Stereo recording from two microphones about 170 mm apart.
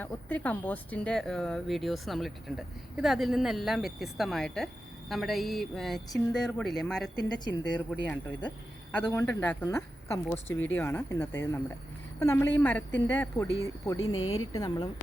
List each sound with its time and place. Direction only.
0.0 s speech: 10° left (ahead or behind)
7.2 s speech: 25° left (ahead or behind)
7.7 s speech: 5° left (ahead or behind); by 14.8 s 20° left (ahead or behind)